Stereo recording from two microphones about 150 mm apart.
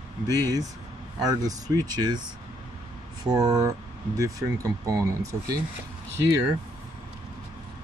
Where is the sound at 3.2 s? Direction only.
25° right (ahead or behind).